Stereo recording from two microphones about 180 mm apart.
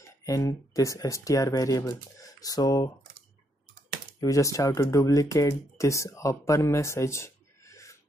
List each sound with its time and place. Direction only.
0.2 s speech: 20° left (ahead or behind)
4.2 s speech: 20° left (ahead or behind)